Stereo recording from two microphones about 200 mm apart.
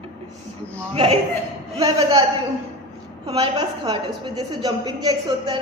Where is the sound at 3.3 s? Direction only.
20° right (ahead or behind).